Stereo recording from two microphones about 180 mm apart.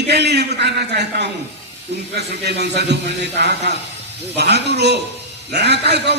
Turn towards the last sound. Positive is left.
turn(degrees=-70)  # may be behind; listen again after turning